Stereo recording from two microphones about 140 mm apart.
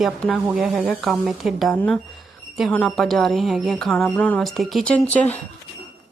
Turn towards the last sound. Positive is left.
turn(degrees=10)  # may be behind; listen again after turning